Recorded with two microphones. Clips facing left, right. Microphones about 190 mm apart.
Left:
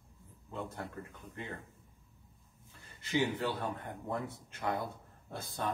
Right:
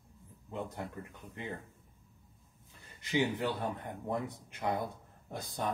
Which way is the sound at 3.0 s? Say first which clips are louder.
Right 1 dB; 15° right (ahead or behind).